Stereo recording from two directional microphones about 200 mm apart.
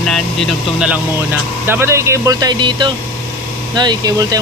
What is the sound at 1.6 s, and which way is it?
Speech, 10° right (ahead or behind).